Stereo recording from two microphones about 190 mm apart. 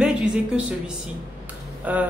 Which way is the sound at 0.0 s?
5° right (ahead or behind).